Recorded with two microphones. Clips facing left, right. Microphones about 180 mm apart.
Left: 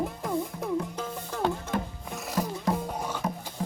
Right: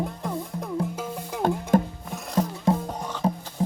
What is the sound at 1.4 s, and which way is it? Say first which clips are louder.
Music: right 7 dB; 45° right (ahead or behind).